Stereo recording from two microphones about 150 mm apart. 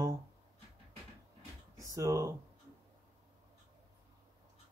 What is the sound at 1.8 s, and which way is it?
Speech, 20° right (ahead or behind).